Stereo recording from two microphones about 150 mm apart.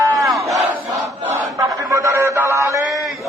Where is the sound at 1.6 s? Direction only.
20° right (ahead or behind).